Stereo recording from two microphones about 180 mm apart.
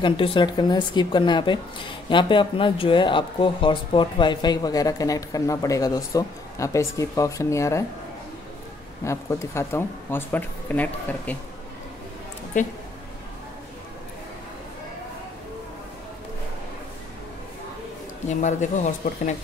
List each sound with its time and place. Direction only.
0.0 s speech: 25° left (ahead or behind)
9.0 s speech: 15° left (ahead or behind)
18.3 s speech: 40° left (ahead or behind)